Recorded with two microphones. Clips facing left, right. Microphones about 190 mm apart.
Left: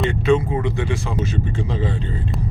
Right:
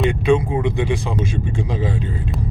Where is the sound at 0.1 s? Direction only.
15° right (ahead or behind).